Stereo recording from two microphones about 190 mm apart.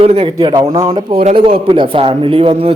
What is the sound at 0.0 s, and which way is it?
A man's voice, 30° right (ahead or behind).